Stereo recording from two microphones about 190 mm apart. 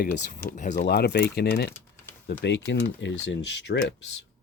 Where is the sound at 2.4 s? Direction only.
70° left (ahead or behind).